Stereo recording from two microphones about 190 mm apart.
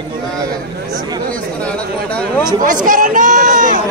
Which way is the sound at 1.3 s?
5° left (ahead or behind).